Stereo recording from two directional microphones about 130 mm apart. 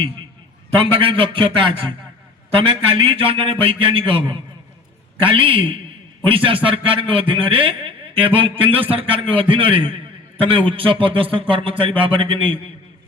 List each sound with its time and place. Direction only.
0.8 s a man's voice: 45° right (ahead or behind)